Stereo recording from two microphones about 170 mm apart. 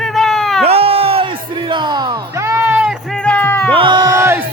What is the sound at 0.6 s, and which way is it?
Music, 35° right (ahead or behind).